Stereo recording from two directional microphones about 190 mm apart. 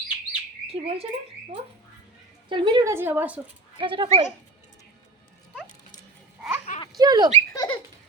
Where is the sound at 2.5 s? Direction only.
25° right (ahead or behind).